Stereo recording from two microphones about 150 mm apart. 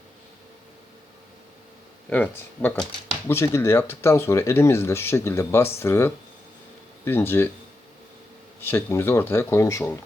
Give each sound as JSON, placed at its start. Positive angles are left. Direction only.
{"t": 2.0, "sound": "speech", "side_deg": 10}
{"t": 8.6, "sound": "speech", "side_deg": 15}